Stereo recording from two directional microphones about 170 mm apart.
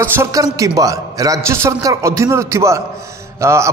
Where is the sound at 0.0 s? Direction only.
15° right (ahead or behind).